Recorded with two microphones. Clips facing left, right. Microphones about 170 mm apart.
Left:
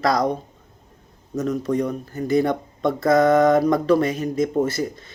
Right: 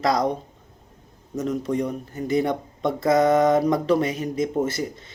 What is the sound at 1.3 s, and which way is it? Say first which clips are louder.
Speech: left 2 dB; 20° right (ahead or behind).